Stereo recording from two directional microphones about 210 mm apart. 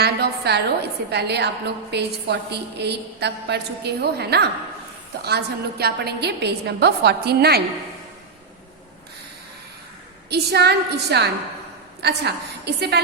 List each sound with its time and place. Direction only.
0.0 s a woman's voice: 50° right (ahead or behind)
10.2 s a woman's voice: 50° right (ahead or behind)